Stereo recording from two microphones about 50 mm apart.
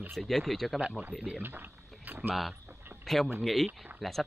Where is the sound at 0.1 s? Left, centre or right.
Centre.